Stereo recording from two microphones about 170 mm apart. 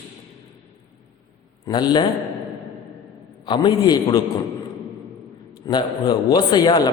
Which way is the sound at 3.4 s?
25° left (ahead or behind).